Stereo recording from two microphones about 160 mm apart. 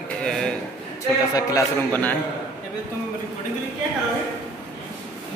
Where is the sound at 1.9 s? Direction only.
10° left (ahead or behind).